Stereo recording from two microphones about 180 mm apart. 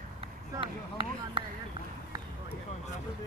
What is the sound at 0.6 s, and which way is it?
Speech, 30° right (ahead or behind).